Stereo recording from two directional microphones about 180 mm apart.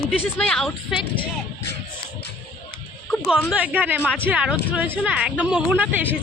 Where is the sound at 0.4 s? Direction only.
Centre (ahead or behind).